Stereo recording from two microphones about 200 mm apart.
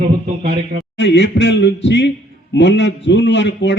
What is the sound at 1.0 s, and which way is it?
A man's voice, 60° left (ahead or behind).